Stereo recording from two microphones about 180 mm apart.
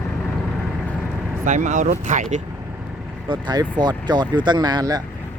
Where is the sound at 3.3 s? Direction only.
25° right (ahead or behind).